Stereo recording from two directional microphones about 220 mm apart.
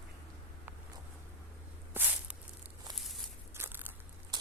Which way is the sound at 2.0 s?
10° right (ahead or behind).